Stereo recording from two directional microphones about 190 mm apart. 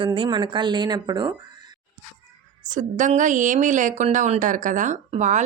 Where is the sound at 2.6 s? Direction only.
40° right (ahead or behind).